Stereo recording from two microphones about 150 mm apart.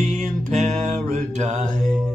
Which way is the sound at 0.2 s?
55° right (ahead or behind).